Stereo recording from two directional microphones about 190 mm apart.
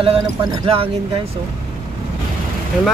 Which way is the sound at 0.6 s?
30° right (ahead or behind).